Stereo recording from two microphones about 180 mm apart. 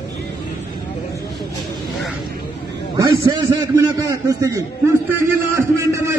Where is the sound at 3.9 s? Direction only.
20° right (ahead or behind).